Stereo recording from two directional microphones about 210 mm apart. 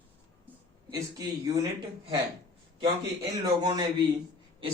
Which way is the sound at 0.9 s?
15° right (ahead or behind).